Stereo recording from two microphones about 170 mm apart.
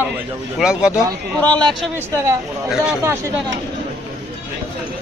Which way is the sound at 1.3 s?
5° left (ahead or behind).